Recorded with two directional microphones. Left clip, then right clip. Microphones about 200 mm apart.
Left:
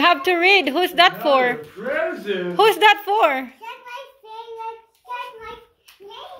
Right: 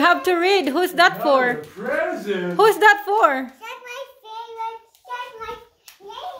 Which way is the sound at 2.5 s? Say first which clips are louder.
Even; 5° right (ahead or behind).